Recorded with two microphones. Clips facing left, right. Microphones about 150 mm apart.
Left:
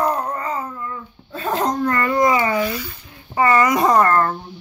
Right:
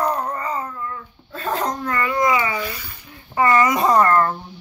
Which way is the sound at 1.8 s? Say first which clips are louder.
Left 4 dB; 45° left (ahead or behind).